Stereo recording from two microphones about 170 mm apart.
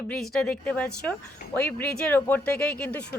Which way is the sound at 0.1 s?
Centre (ahead or behind).